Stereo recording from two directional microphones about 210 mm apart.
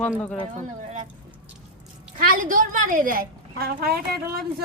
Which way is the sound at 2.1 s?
40° right (ahead or behind).